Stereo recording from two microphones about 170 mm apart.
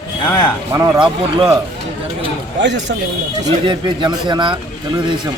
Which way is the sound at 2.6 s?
90° right.